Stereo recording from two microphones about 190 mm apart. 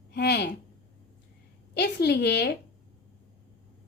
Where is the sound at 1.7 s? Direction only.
60° left (ahead or behind).